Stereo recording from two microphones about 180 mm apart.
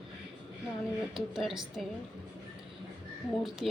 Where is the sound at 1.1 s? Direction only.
Centre (ahead or behind).